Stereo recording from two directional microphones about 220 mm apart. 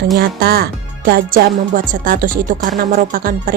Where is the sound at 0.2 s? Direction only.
45° right (ahead or behind).